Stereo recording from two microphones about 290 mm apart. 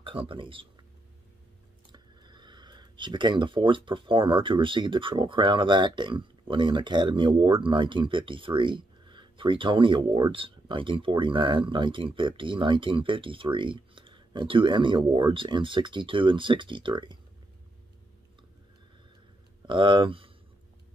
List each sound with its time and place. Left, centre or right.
0.0 s speech: centre
1.9 s speech: centre
19.7 s speech: centre